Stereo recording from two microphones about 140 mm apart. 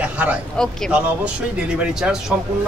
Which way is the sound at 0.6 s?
5° left (ahead or behind).